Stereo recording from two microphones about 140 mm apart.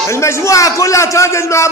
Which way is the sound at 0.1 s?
20° left (ahead or behind).